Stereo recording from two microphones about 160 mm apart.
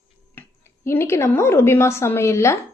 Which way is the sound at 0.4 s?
15° left (ahead or behind).